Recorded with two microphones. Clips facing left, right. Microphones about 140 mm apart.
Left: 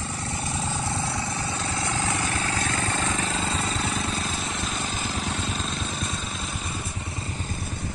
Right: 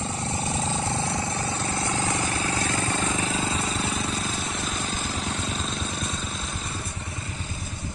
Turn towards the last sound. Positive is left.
turn(degrees=0)  # may be behind; listen again after turning